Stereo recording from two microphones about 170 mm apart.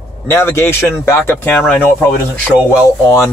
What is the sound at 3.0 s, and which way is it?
Speech, 15° left (ahead or behind).